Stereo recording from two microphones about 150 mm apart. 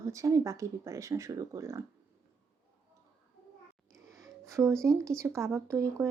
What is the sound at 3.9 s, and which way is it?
Speech, 20° right (ahead or behind).